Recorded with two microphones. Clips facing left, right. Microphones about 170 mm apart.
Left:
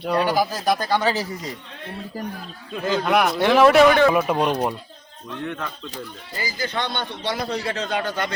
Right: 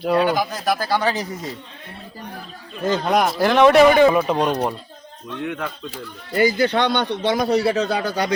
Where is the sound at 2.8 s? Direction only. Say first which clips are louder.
Right 1 dB; 45° right (ahead or behind).